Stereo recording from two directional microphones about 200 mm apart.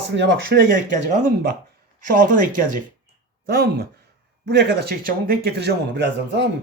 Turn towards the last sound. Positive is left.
turn(degrees=-60)  # may be behind; listen again after turning